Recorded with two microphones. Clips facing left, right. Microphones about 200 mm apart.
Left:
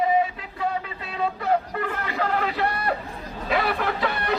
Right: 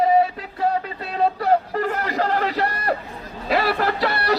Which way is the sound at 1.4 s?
35° right (ahead or behind).